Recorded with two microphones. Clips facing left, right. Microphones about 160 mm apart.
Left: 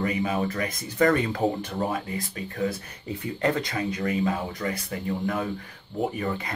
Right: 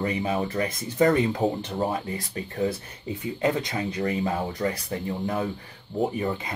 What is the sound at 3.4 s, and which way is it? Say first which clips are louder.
Speech: even; 10° right (ahead or behind).